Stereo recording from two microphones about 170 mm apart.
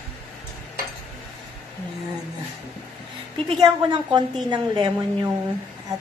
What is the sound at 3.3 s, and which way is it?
A woman's voice, 25° right (ahead or behind).